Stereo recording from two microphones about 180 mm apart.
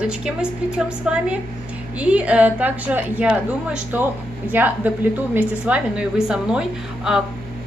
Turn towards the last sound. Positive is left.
turn(degrees=-5)  # may be behind; listen again after turning